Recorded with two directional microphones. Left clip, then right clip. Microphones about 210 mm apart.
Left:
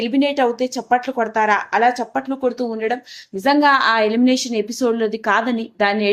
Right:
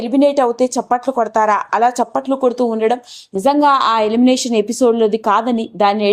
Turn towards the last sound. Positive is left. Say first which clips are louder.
# right 4 dB
turn(degrees=-20)  # may be behind; listen again after turning